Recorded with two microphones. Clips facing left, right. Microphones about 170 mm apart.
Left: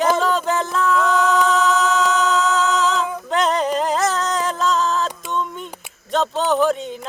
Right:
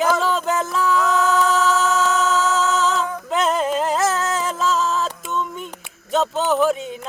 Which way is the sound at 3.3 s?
Centre (ahead or behind).